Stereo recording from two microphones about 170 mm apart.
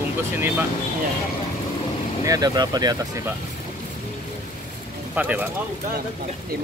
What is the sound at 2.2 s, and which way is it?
Speech, 20° right (ahead or behind).